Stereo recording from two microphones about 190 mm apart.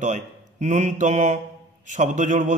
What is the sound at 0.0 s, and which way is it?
A man's voice, 40° right (ahead or behind).